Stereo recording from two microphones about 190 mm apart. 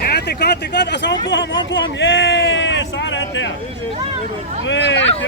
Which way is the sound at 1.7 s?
70° left (ahead or behind).